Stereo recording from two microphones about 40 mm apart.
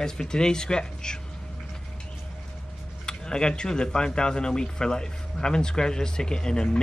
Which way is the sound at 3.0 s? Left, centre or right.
Centre.